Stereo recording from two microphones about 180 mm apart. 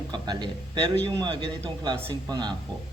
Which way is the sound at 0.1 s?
25° right (ahead or behind).